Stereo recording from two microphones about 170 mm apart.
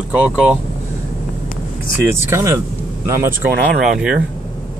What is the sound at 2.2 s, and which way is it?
Speech, 15° right (ahead or behind).